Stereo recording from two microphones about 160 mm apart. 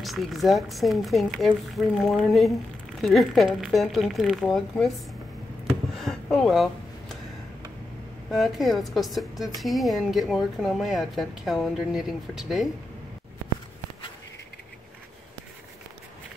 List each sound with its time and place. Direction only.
0.0 s a woman's voice: centre (ahead or behind)
5.9 s a sound: centre (ahead or behind)
8.3 s a woman's voice: centre (ahead or behind)